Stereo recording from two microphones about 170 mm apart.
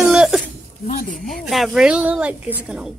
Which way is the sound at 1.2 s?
Centre (ahead or behind).